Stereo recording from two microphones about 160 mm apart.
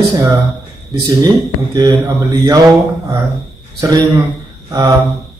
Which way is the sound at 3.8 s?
25° right (ahead or behind).